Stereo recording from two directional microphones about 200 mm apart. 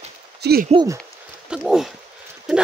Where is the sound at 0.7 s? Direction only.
25° right (ahead or behind).